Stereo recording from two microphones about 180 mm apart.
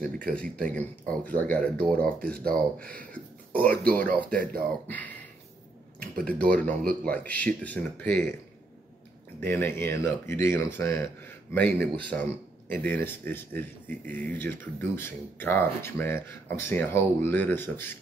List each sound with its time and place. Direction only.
0.3 s speech: 5° left (ahead or behind)
2.4 s speech: 55° right (ahead or behind)
6.2 s speech: 5° left (ahead or behind)
9.4 s speech: 10° left (ahead or behind)